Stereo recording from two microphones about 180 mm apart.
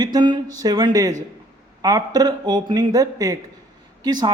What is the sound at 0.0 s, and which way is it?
A man's voice, 25° right (ahead or behind).